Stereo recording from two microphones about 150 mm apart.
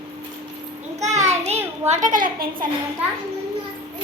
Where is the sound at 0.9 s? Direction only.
50° right (ahead or behind).